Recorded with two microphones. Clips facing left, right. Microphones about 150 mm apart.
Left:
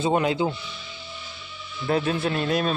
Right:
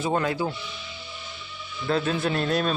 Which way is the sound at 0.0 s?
20° left (ahead or behind).